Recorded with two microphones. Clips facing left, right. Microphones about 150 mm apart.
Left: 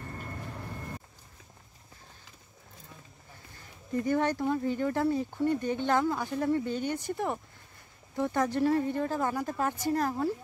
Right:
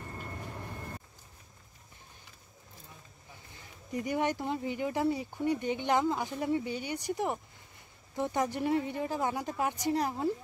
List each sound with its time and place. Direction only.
3.5 s speech: 15° right (ahead or behind)